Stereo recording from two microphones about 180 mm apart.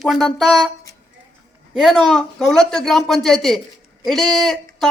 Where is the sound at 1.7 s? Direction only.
Centre (ahead or behind).